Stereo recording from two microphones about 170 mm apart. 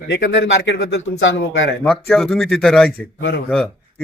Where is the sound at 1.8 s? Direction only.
5° left (ahead or behind).